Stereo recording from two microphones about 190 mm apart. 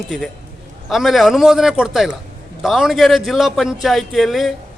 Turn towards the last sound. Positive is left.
turn(degrees=0)  # may be behind; listen again after turning